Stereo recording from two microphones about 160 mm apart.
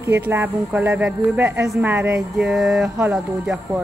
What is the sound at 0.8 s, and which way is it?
Speech, 10° right (ahead or behind).